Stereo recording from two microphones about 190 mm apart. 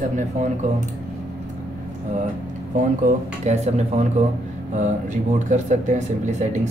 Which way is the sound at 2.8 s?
40° right (ahead or behind).